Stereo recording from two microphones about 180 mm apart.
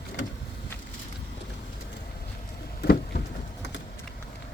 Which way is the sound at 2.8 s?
65° left (ahead or behind).